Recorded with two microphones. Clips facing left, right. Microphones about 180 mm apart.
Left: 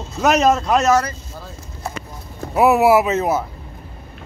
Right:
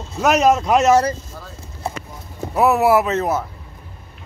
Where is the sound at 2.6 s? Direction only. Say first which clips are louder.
Left 2 dB; 5° left (ahead or behind).